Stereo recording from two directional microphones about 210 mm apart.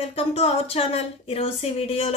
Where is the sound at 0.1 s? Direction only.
30° left (ahead or behind).